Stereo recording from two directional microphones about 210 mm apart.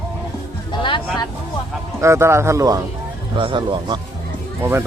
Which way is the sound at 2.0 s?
15° right (ahead or behind).